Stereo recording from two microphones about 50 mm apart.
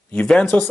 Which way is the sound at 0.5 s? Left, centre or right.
Left.